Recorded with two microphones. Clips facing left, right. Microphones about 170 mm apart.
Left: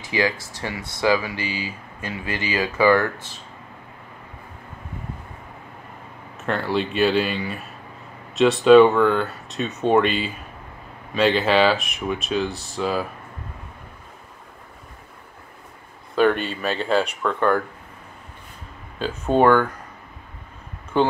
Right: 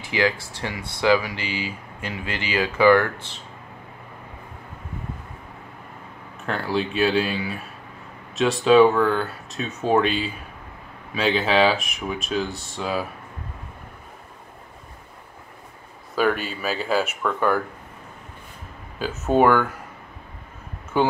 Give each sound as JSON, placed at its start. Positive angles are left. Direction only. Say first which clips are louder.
{"t": 1.2, "sound": "speech", "louder": "left 1 dB", "side_deg": -20}
{"t": 2.8, "sound": "speech", "louder": "right 1 dB", "side_deg": 15}
{"t": 6.4, "sound": "speech", "louder": "left 2 dB", "side_deg": 0}
{"t": 16.2, "sound": "speech", "louder": "left 3 dB", "side_deg": -5}
{"t": 18.9, "sound": "speech", "louder": "even", "side_deg": -5}
{"t": 20.9, "sound": "speech", "louder": "left 1 dB", "side_deg": -10}